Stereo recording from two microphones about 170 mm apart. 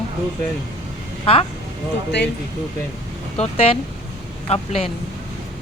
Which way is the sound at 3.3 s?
35° left (ahead or behind).